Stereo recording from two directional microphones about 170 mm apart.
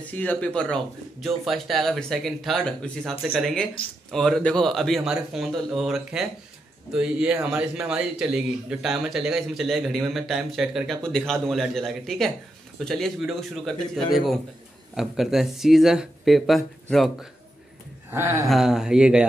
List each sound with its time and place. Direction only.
0.1 s speech: 10° left (ahead or behind)
18.1 s speech: 15° right (ahead or behind)
18.5 s speech: centre (ahead or behind)